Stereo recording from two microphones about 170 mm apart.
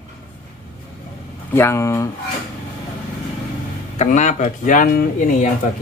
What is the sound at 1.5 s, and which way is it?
Speech, 15° left (ahead or behind).